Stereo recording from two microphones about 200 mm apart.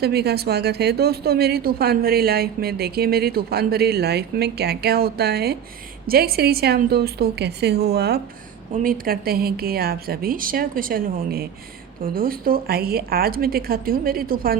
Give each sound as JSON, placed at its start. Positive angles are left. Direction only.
{"t": 0.0, "sound": "a woman's voice", "side_deg": -55}